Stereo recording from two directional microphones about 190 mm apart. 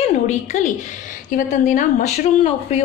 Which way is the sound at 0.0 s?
40° left (ahead or behind).